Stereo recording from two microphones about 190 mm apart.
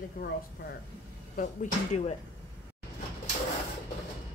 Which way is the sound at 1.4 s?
40° left (ahead or behind).